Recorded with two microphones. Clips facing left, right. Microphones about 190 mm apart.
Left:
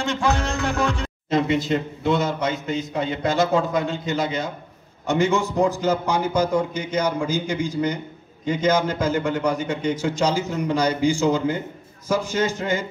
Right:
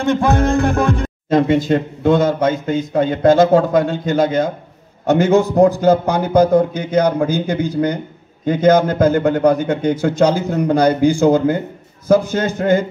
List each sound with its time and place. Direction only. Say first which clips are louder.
0.0 s speech: right 8 dB; 55° right (ahead or behind)
5.1 s a man's voice: right 7 dB; 60° right (ahead or behind)